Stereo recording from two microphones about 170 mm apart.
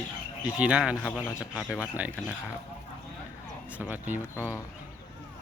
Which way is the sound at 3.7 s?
10° right (ahead or behind).